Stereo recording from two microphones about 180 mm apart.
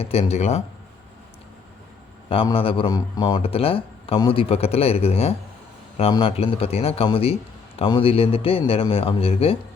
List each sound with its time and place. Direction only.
0.0 s a man's voice: 35° left (ahead or behind)
2.3 s a man's voice: 30° left (ahead or behind)